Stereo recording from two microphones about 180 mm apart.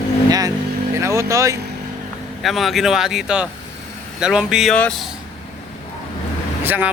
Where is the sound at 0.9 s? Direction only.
15° right (ahead or behind).